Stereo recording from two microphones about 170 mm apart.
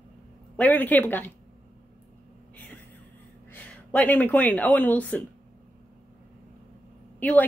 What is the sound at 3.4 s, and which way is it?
Speech, 10° left (ahead or behind).